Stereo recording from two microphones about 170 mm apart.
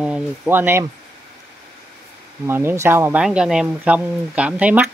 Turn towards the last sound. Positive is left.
turn(degrees=-5)  # may be behind; listen again after turning